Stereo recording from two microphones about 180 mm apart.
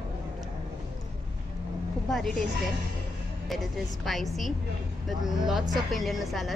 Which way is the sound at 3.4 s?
Centre (ahead or behind).